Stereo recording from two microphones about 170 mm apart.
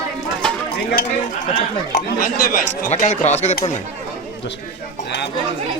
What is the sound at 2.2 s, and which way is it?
Speech, 55° left (ahead or behind).